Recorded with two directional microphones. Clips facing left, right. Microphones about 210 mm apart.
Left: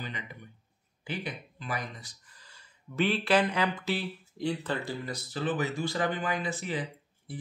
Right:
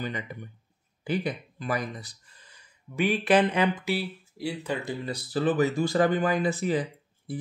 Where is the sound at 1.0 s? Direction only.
40° right (ahead or behind).